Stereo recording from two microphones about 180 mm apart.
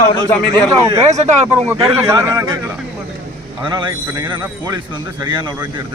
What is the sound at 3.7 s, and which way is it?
Speech, 25° right (ahead or behind).